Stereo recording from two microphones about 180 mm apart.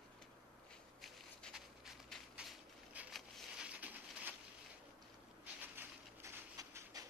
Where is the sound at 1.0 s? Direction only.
Centre (ahead or behind).